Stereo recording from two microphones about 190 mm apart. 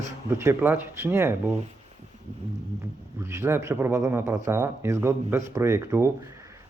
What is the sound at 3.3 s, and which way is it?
Speech, 15° right (ahead or behind).